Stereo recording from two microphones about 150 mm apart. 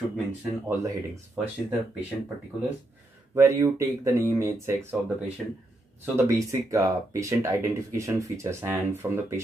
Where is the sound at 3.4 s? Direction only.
15° right (ahead or behind).